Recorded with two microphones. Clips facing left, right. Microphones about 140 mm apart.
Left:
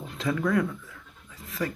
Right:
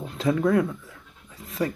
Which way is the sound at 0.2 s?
25° right (ahead or behind).